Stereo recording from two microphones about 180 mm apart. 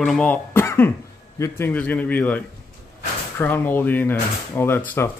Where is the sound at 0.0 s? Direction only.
5° left (ahead or behind).